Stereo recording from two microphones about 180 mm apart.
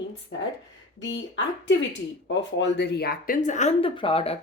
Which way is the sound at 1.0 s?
90° left.